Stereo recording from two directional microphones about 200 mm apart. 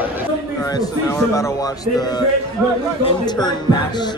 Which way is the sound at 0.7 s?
15° left (ahead or behind).